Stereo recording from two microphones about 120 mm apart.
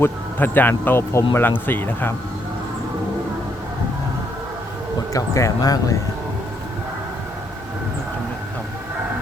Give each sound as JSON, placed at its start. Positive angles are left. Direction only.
{"t": 0.0, "sound": "speech", "side_deg": 15}
{"t": 5.1, "sound": "speech", "side_deg": 25}